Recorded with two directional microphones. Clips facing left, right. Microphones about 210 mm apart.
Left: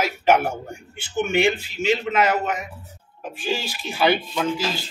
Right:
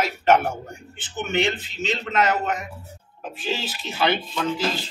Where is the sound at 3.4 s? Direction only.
50° left (ahead or behind).